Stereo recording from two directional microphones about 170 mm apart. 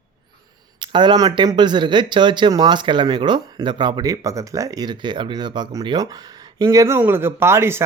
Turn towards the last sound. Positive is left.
turn(degrees=-15)  # may be behind; listen again after turning